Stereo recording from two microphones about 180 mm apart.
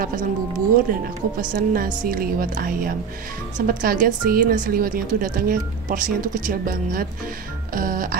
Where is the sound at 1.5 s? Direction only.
55° right (ahead or behind).